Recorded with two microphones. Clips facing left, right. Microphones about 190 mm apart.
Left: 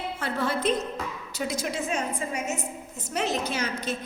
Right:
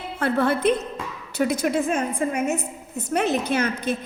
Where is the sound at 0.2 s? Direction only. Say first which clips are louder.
Right 8 dB; 60° right (ahead or behind).